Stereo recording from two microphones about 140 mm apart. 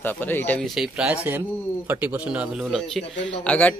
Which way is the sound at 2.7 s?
5° left (ahead or behind).